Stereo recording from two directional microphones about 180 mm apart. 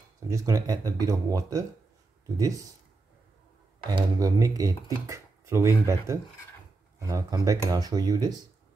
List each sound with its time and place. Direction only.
0.3 s speech: 15° right (ahead or behind)
3.9 s speech: 20° right (ahead or behind)